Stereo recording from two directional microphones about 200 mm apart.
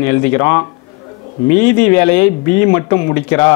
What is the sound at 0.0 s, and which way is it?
Speech, 15° left (ahead or behind).